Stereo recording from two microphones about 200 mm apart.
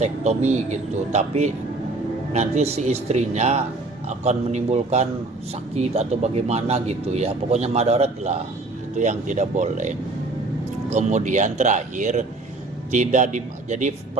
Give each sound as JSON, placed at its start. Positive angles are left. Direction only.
{"t": 0.0, "sound": "speech", "side_deg": -35}